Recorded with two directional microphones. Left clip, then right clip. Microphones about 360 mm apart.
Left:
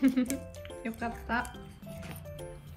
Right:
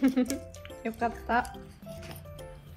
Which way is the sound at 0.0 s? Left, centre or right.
Centre.